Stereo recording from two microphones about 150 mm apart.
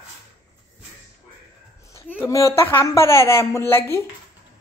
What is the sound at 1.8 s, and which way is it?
A woman's voice, 20° left (ahead or behind).